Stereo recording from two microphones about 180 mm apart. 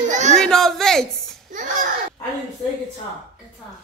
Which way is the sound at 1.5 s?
45° right (ahead or behind).